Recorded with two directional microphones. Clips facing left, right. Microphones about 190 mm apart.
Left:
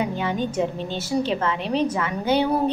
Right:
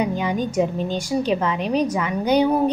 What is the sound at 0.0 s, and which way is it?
A woman's voice, 15° right (ahead or behind).